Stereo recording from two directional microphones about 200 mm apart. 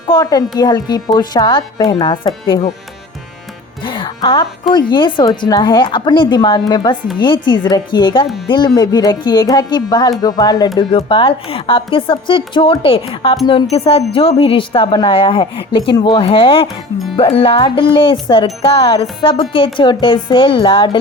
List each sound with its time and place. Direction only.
0.1 s speech: 20° left (ahead or behind)
3.8 s music: 25° left (ahead or behind)
4.9 s speech: 25° left (ahead or behind)